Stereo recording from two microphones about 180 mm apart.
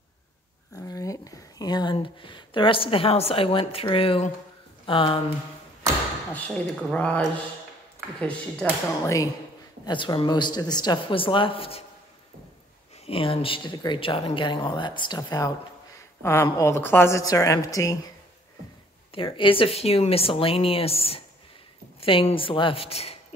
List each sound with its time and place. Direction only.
0.7 s speech: 20° left (ahead or behind)
6.3 s a woman's voice: 10° left (ahead or behind)
9.8 s speech: 25° left (ahead or behind)
13.0 s a woman's voice: 30° left (ahead or behind)
19.1 s speech: 30° left (ahead or behind)